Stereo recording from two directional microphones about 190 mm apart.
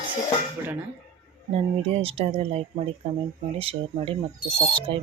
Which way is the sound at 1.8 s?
30° right (ahead or behind).